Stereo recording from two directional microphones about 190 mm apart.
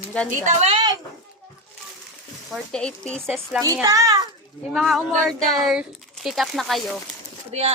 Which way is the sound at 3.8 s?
20° right (ahead or behind).